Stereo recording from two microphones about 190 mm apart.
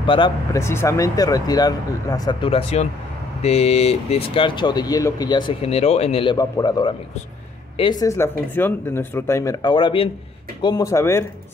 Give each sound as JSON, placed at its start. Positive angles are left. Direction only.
{"t": 0.0, "sound": "speech", "side_deg": 25}
{"t": 0.6, "sound": "speech", "side_deg": 15}
{"t": 6.3, "sound": "speech", "side_deg": 20}